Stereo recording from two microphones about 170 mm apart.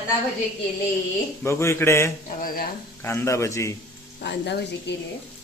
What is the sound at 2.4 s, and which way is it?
Speech, 60° left (ahead or behind).